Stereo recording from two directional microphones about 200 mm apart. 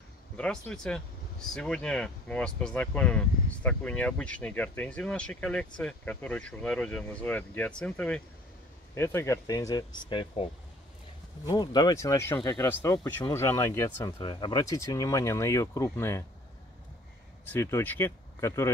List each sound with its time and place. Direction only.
0.4 s speech: 5° left (ahead or behind)
17.5 s speech: 10° left (ahead or behind)